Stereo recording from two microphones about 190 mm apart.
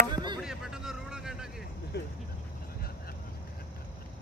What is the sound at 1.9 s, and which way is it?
Speech, 60° left (ahead or behind).